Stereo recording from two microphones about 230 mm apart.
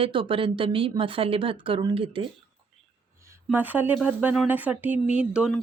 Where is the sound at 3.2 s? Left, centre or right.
Centre.